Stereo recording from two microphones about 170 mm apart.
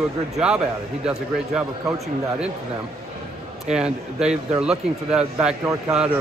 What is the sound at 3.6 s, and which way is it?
Speech, 5° right (ahead or behind).